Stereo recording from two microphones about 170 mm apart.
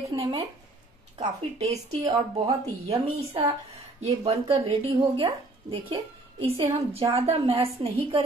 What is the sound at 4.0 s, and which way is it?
A woman's voice, 40° right (ahead or behind).